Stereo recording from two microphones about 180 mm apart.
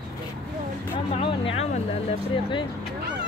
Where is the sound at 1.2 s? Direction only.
30° left (ahead or behind).